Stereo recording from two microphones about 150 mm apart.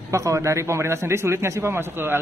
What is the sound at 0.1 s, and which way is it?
A man's voice, 20° right (ahead or behind).